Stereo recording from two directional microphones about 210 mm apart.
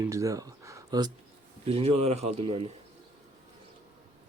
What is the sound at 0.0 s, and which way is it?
A man's voice, 15° right (ahead or behind).